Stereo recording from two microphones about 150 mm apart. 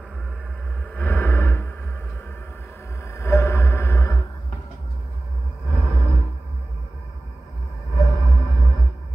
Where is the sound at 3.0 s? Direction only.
20° left (ahead or behind).